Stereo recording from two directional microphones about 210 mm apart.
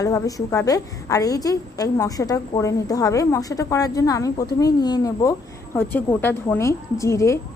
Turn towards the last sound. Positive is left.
turn(degrees=15)  # may be behind; listen again after turning